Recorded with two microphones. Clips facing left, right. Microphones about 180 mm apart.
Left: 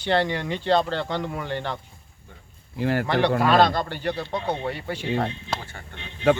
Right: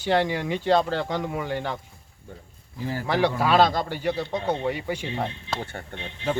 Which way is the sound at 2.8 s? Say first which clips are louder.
Left 7 dB; 70° left (ahead or behind).